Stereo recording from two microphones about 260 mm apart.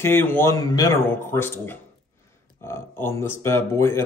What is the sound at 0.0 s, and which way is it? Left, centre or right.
Speech, centre.